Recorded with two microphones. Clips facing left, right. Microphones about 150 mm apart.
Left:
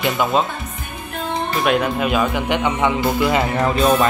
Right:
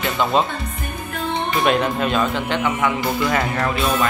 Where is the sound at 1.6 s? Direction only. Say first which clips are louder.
Left 1 dB; 5° left (ahead or behind).